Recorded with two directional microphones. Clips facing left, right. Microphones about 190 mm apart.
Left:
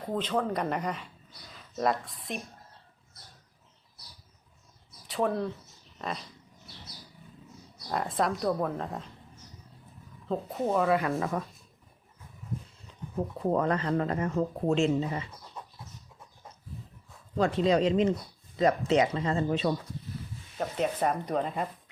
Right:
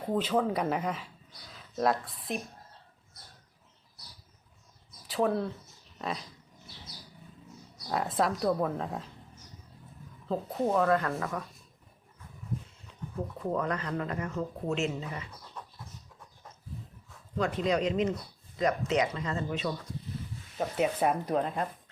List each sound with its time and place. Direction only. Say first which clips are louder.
0.0 s speech: right 2 dB; 5° right (ahead or behind)
5.0 s speech: even; centre (ahead or behind)
7.9 s speech: even; centre (ahead or behind)
10.2 s speech: even; centre (ahead or behind)
11.2 s speech: left 4 dB; 30° left (ahead or behind)
13.5 s speech: left 5 dB; 30° left (ahead or behind)
17.3 s speech: left 4 dB; 30° left (ahead or behind)
20.6 s speech: right 1 dB; 5° right (ahead or behind)